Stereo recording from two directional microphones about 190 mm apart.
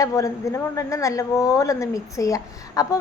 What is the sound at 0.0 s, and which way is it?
A woman's voice, 15° left (ahead or behind).